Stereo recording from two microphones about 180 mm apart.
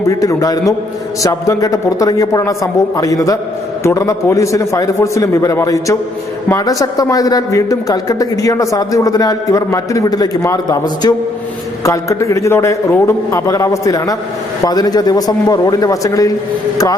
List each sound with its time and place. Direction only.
0.1 s a man's voice: 20° left (ahead or behind)